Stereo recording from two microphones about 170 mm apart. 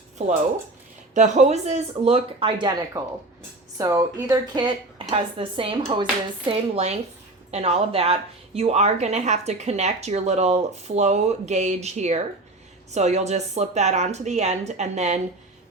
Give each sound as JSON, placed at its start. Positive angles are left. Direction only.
{"t": 1.1, "sound": "a woman's voice", "side_deg": -45}